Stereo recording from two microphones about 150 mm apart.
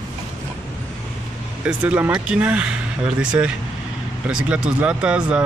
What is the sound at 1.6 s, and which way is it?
Speech, 10° right (ahead or behind).